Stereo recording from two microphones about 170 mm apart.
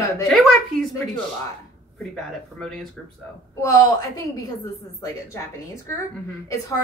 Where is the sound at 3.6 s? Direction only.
20° left (ahead or behind).